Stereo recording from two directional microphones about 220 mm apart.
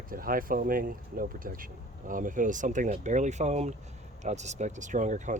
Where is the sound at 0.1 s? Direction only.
40° right (ahead or behind).